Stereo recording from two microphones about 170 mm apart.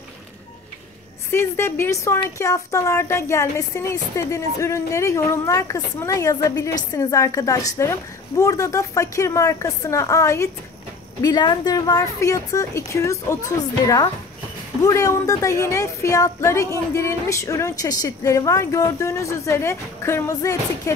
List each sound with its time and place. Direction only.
1.3 s a woman's voice: 15° left (ahead or behind)
14.9 s speech: 20° left (ahead or behind)